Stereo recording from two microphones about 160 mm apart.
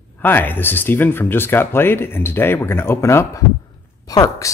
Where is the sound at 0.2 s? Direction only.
10° left (ahead or behind).